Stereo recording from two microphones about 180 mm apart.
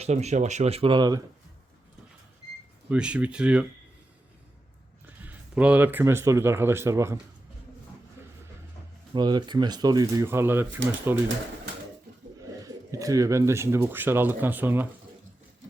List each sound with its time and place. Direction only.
0.0 s speech: 40° right (ahead or behind); by 1.2 s 20° right (ahead or behind)
2.9 s speech: 5° right (ahead or behind)
5.0 s speech: 10° right (ahead or behind)
9.1 s speech: 25° right (ahead or behind)
12.5 s speech: 20° right (ahead or behind)